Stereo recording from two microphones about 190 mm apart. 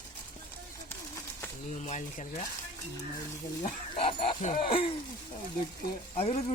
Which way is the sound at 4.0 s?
30° left (ahead or behind).